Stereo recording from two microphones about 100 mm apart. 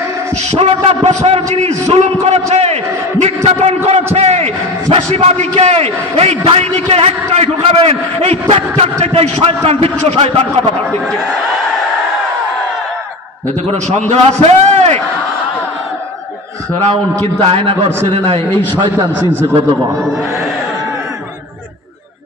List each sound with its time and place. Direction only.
0.5 s a man's voice: 80° right
13.8 s a man's voice: 90° right
17.2 s a man's voice: 80° right